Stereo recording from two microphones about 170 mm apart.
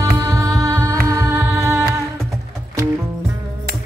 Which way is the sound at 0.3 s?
20° right (ahead or behind).